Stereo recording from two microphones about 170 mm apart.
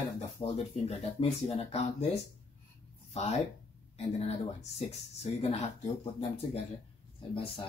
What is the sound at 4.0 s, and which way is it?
Speech, 40° left (ahead or behind).